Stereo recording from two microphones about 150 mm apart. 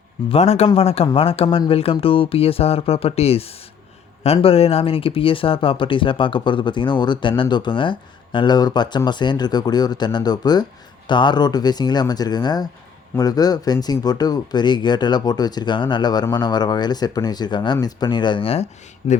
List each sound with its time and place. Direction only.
0.3 s speech: 45° left (ahead or behind)